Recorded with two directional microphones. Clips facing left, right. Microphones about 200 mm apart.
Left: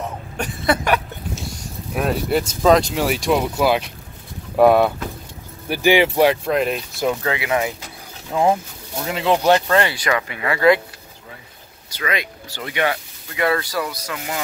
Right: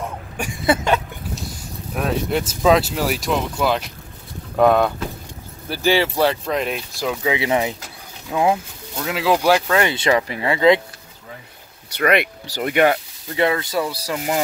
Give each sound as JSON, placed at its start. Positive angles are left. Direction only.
{"t": 0.7, "sound": "a sound", "side_deg": -25}
{"t": 2.0, "sound": "speech", "side_deg": 0}
{"t": 7.3, "sound": "speech", "side_deg": -25}
{"t": 8.3, "sound": "speech", "side_deg": -5}
{"t": 9.8, "sound": "speech", "side_deg": -25}
{"t": 12.0, "sound": "speech", "side_deg": -65}
{"t": 12.5, "sound": "speech", "side_deg": -50}
{"t": 13.4, "sound": "speech", "side_deg": -20}